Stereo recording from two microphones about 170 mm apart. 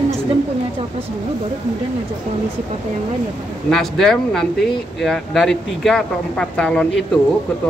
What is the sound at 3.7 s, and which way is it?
Speech, centre (ahead or behind).